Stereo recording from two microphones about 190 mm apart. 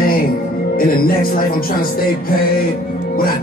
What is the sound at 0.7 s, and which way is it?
Speech, 50° left (ahead or behind).